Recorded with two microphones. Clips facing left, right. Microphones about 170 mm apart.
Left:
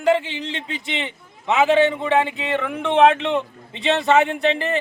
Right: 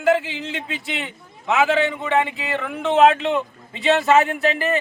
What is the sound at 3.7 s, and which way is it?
Speech, 5° right (ahead or behind).